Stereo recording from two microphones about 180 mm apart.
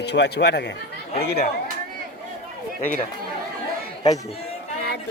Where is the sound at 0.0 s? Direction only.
70° left (ahead or behind).